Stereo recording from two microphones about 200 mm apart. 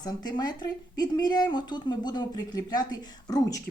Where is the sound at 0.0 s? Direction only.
20° left (ahead or behind).